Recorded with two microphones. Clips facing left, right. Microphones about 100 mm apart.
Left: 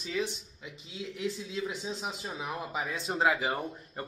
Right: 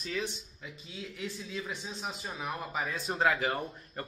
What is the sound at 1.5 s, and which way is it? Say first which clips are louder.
A man's voice: left 4 dB; 20° left (ahead or behind).